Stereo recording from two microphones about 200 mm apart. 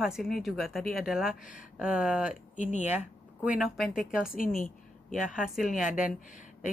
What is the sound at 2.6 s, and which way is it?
Speech, 35° left (ahead or behind).